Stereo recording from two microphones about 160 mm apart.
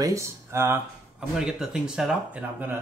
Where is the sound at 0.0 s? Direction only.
20° right (ahead or behind).